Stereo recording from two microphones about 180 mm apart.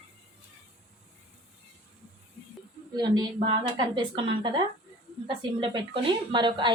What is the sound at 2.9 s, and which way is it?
A woman's voice, 25° right (ahead or behind).